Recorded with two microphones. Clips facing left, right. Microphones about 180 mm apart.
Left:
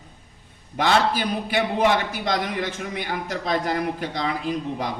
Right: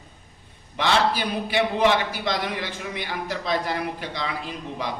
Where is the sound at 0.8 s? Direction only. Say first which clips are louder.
Left 2 dB; 50° left (ahead or behind).